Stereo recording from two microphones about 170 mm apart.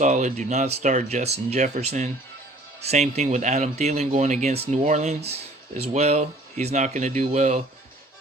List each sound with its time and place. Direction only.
0.0 s speech: 45° right (ahead or behind)